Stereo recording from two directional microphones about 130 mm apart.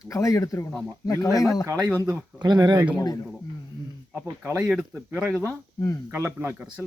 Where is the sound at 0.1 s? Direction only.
25° left (ahead or behind).